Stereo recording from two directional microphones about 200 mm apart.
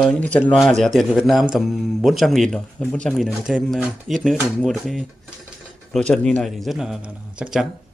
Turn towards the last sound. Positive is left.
turn(degrees=-5)  # may be behind; listen again after turning